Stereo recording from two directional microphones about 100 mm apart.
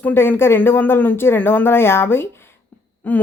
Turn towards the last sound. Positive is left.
turn(degrees=15)  # may be behind; listen again after turning